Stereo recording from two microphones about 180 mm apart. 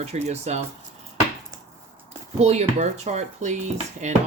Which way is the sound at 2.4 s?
35° right (ahead or behind).